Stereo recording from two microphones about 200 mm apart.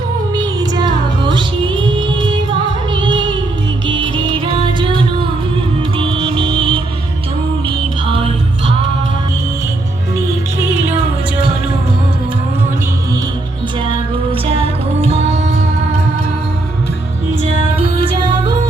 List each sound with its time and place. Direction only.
0.3 s music: 20° right (ahead or behind)
8.0 s music: 25° right (ahead or behind)
14.4 s music: 30° right (ahead or behind)